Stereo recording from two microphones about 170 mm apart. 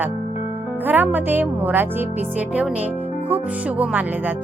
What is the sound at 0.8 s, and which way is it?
Speech, 10° right (ahead or behind).